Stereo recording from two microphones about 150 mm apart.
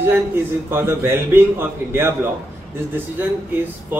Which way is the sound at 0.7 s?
15° right (ahead or behind).